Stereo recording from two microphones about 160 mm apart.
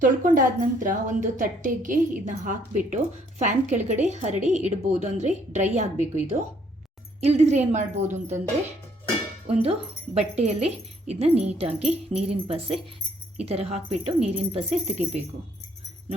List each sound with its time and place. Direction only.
0.0 s a woman's voice: 55° right (ahead or behind)
7.2 s a woman's voice: 40° right (ahead or behind)
9.5 s speech: 40° right (ahead or behind)